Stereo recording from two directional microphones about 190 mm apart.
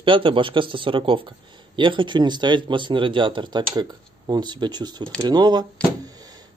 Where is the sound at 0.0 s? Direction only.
25° right (ahead or behind).